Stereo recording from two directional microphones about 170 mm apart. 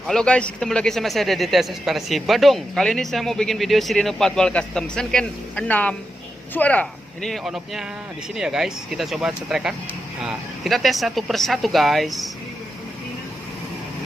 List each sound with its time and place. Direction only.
0.1 s a man's voice: 5° left (ahead or behind)